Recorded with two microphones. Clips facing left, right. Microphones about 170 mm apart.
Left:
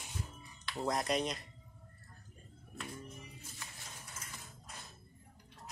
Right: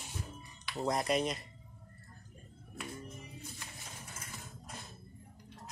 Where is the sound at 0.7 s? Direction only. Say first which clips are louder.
Right 2 dB; 5° right (ahead or behind).